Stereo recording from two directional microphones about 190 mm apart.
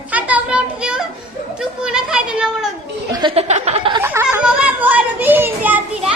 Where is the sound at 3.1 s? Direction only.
25° right (ahead or behind).